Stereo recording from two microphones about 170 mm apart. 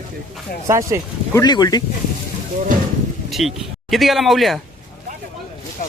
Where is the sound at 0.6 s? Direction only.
15° right (ahead or behind).